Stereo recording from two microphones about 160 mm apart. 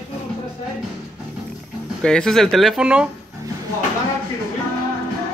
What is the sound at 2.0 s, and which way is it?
Speech, 5° left (ahead or behind).